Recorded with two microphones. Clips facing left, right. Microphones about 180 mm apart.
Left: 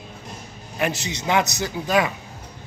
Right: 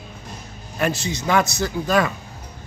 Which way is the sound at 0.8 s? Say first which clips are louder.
Right 2 dB; 20° left (ahead or behind).